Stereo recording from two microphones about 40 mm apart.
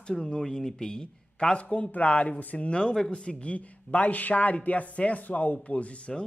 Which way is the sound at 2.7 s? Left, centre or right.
Left.